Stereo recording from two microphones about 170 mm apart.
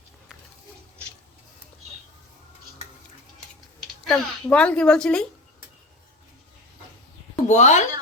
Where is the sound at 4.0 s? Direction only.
5° left (ahead or behind).